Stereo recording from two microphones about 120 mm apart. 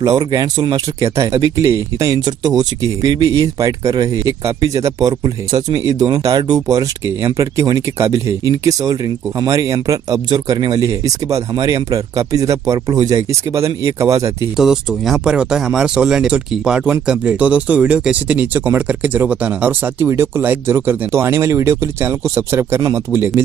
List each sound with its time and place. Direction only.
0.0 s speech: 30° right (ahead or behind)
14.6 s speech: 5° right (ahead or behind); by 23.4 s 20° right (ahead or behind)